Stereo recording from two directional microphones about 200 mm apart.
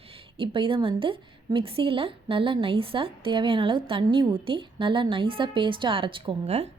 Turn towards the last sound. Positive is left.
turn(degrees=-30)  # may be behind; listen again after turning